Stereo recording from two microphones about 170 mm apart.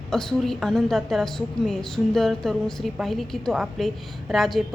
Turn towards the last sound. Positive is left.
turn(degrees=0)  # may be behind; listen again after turning